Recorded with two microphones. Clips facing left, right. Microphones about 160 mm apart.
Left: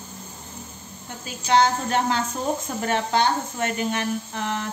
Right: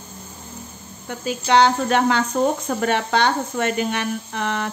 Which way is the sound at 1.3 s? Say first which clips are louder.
Right 3 dB; 70° right (ahead or behind).